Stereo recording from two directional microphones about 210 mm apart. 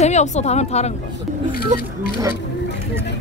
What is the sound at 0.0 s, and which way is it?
Speech, 35° left (ahead or behind).